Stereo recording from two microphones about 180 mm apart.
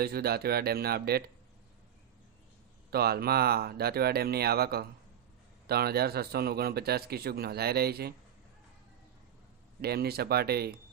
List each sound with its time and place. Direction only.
0.0 s a man's voice: 60° right (ahead or behind)
2.9 s a man's voice: 60° right (ahead or behind)
9.8 s a man's voice: 60° right (ahead or behind)